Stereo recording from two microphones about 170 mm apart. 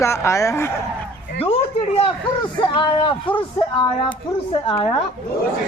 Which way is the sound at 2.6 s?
30° left (ahead or behind).